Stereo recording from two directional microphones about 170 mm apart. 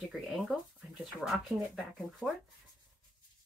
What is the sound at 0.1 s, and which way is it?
Speech, centre (ahead or behind).